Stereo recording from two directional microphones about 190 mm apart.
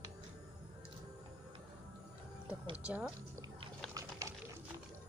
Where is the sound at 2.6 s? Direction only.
35° right (ahead or behind).